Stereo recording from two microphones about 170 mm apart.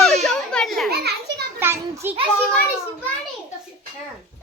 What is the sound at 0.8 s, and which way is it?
Children playing, 70° right (ahead or behind).